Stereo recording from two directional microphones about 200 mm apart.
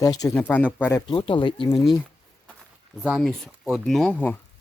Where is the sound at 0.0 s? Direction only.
15° left (ahead or behind).